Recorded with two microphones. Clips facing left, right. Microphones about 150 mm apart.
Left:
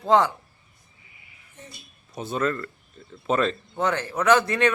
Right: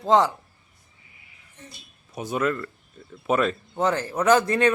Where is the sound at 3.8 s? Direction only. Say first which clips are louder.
Right 2 dB; 30° right (ahead or behind).